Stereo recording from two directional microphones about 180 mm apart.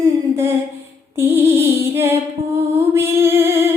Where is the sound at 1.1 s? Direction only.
10° right (ahead or behind).